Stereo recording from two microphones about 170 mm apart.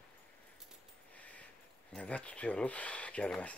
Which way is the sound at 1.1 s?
10° left (ahead or behind).